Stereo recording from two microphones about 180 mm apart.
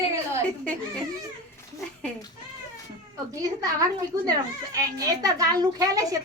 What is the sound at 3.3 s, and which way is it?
A child's voice, 20° right (ahead or behind).